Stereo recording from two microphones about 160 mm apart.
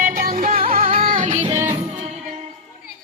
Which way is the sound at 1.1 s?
50° right (ahead or behind).